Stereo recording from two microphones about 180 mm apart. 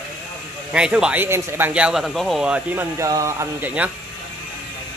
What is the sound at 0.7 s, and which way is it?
Speech, 5° right (ahead or behind).